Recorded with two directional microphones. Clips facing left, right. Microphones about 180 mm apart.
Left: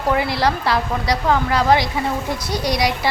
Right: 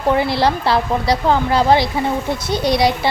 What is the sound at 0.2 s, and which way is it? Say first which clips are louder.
Speech: right 3 dB; 30° right (ahead or behind).